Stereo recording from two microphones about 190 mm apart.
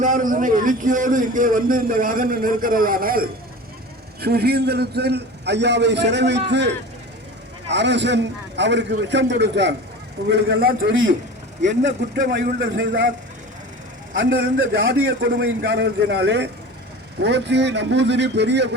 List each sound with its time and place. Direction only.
0.0 s a man's voice: 45° right (ahead or behind)
11.6 s a man's voice: 70° right (ahead or behind)
14.2 s a man's voice: 85° right; by 18.7 s 65° right (ahead or behind)